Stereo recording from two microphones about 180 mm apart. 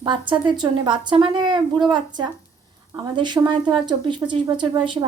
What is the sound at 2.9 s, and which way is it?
Speech, 25° right (ahead or behind).